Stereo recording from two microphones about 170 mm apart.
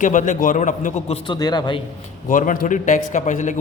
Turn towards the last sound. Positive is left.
turn(degrees=45)  # may be behind; listen again after turning